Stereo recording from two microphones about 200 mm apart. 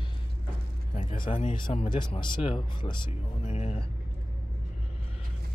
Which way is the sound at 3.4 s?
35° left (ahead or behind).